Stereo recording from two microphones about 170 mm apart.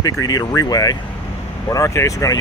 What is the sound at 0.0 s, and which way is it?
Speech, 20° left (ahead or behind).